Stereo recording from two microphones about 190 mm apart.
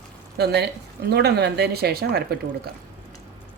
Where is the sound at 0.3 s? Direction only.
60° right (ahead or behind).